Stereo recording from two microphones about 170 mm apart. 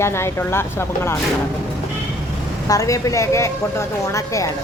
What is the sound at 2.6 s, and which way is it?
Speech, 20° left (ahead or behind).